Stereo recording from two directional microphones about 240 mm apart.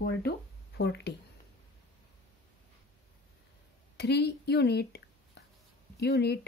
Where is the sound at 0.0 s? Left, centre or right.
Left.